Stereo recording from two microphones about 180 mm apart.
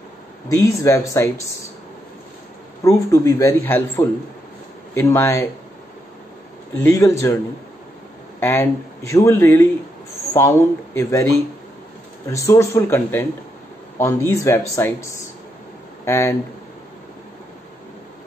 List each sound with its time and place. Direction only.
0.5 s a man's voice: 15° left (ahead or behind)
2.8 s a man's voice: 15° left (ahead or behind)
6.8 s a man's voice: 15° left (ahead or behind)
8.4 s a man's voice: 10° left (ahead or behind)
11.0 s a man's voice: 15° left (ahead or behind)
12.3 s a man's voice: 15° left (ahead or behind)